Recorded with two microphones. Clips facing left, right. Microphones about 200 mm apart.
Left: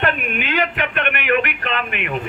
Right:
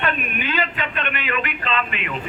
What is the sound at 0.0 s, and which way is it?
A man's voice, 65° left (ahead or behind).